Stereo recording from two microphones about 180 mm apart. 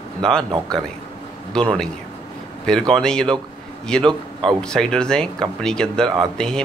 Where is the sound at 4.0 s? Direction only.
25° right (ahead or behind).